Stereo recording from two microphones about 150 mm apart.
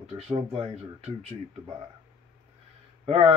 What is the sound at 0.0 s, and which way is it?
Speech, 45° right (ahead or behind).